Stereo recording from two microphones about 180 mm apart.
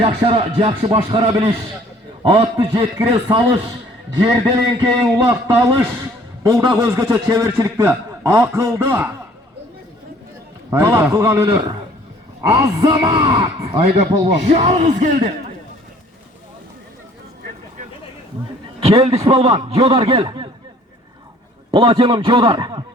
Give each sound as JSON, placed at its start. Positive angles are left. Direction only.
{"t": 0.0, "sound": "a man's voice", "side_deg": -30}
{"t": 10.7, "sound": "a man's voice", "side_deg": -15}
{"t": 13.1, "sound": "speech", "side_deg": -30}
{"t": 18.8, "sound": "speech", "side_deg": -35}
{"t": 21.7, "sound": "a man's voice", "side_deg": -30}